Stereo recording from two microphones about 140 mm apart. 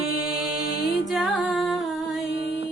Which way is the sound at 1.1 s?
5° right (ahead or behind).